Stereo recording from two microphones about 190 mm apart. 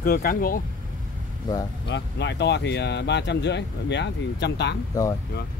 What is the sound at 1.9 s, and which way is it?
Speech, 65° left (ahead or behind).